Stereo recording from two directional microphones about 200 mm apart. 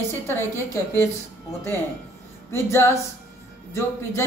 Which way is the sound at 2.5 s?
15° left (ahead or behind).